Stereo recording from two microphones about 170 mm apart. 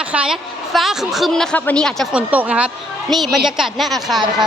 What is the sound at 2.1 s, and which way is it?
A woman's voice, 10° right (ahead or behind).